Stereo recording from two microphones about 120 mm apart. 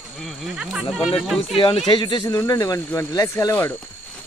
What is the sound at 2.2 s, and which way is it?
Speech, 30° left (ahead or behind).